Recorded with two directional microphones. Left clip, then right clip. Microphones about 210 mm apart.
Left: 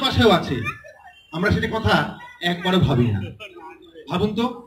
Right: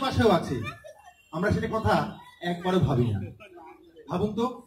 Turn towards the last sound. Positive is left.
turn(degrees=-25)  # may be behind; listen again after turning